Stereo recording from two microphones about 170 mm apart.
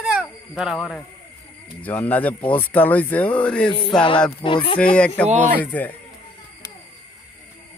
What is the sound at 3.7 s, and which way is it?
Speech, 30° left (ahead or behind).